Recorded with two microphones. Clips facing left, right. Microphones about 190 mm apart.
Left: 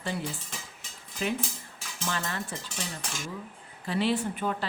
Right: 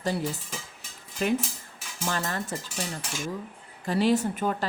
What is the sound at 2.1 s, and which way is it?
Speech, 40° right (ahead or behind).